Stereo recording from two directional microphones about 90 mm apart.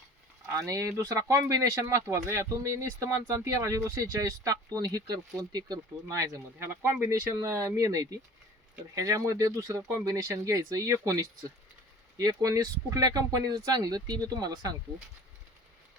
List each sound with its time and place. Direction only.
0.5 s speech: 35° right (ahead or behind)